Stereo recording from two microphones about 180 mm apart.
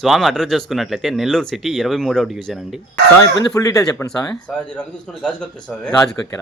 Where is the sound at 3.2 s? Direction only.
20° left (ahead or behind).